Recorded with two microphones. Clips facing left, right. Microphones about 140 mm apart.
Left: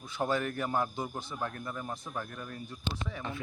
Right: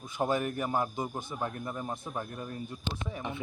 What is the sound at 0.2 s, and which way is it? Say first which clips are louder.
A man's voice: right 1 dB; 15° right (ahead or behind).